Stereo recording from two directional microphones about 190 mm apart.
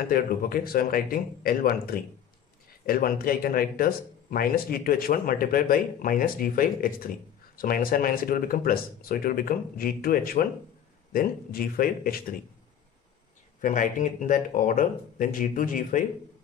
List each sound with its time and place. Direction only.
0.1 s speech: 50° left (ahead or behind)
13.6 s speech: 45° left (ahead or behind)